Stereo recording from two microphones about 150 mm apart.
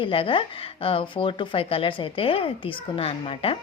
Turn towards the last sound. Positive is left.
turn(degrees=35)  # may be behind; listen again after turning